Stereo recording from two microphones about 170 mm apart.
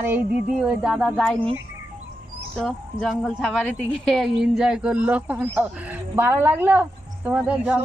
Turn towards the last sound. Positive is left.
turn(degrees=-5)  # may be behind; listen again after turning